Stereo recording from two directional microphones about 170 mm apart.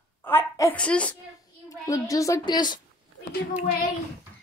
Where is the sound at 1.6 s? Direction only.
20° left (ahead or behind).